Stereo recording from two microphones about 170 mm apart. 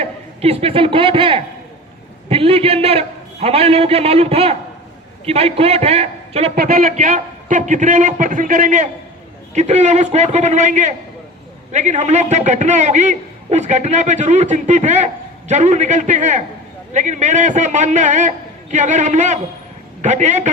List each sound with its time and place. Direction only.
0.0 s a man's voice: 35° right (ahead or behind)
6.6 s a man's voice: 55° right (ahead or behind)